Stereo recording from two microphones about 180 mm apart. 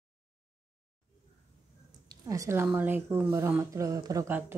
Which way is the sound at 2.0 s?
20° right (ahead or behind).